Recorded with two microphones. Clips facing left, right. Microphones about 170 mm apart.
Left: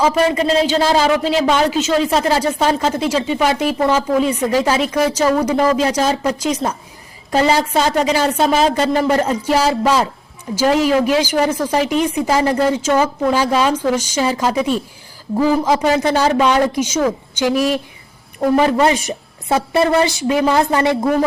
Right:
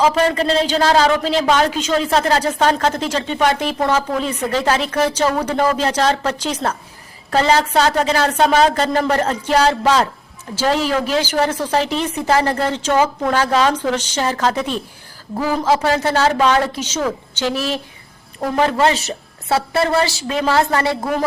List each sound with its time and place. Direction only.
0.0 s a woman's voice: 5° left (ahead or behind)